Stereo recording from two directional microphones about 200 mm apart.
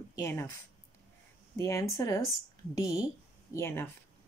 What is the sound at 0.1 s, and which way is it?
Speech, 15° left (ahead or behind).